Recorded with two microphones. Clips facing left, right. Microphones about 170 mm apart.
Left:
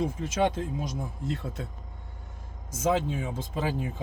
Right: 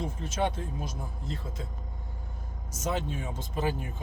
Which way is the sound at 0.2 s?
90° left.